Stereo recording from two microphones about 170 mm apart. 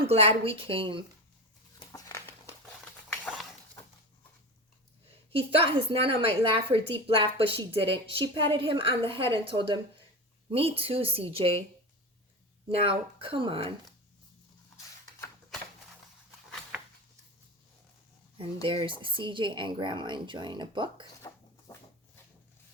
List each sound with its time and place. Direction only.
0.1 s a woman's voice: 35° right (ahead or behind)
1.9 s a sound: 20° left (ahead or behind)
5.4 s a woman's voice: 35° right (ahead or behind)
12.6 s a woman's voice: 35° right (ahead or behind)
18.3 s a woman's voice: 30° right (ahead or behind)